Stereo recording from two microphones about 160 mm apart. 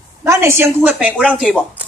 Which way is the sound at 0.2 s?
20° right (ahead or behind).